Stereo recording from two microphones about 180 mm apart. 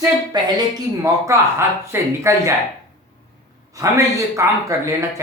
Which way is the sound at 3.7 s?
15° right (ahead or behind).